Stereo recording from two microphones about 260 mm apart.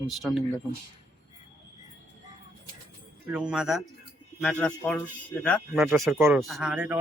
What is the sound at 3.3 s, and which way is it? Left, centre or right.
Speech, centre.